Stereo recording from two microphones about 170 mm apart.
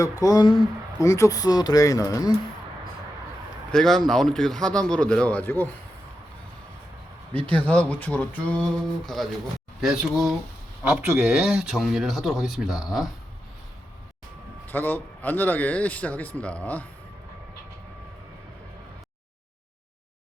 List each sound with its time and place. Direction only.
0.0 s speech: 20° left (ahead or behind)
1.0 s speech: 20° left (ahead or behind)
3.7 s speech: centre (ahead or behind)
7.3 s speech: 10° left (ahead or behind)
10.8 s speech: 5° right (ahead or behind)
14.7 s speech: 10° left (ahead or behind)